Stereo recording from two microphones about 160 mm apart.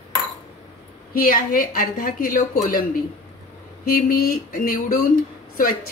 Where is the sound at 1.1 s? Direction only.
65° left (ahead or behind).